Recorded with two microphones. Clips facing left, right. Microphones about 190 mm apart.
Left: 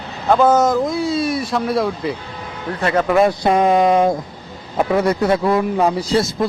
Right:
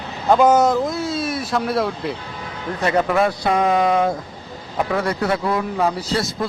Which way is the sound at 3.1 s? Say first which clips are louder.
Left 4 dB; 25° left (ahead or behind).